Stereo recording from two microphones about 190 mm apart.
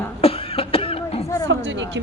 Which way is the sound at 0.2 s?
30° left (ahead or behind).